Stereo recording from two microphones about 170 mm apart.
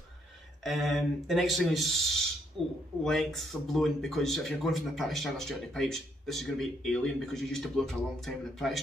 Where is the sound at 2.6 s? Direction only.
30° right (ahead or behind).